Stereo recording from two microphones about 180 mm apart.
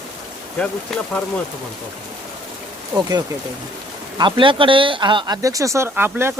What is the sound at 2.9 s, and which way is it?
Speech, 20° right (ahead or behind).